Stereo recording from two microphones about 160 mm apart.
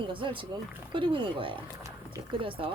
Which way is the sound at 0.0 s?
30° right (ahead or behind).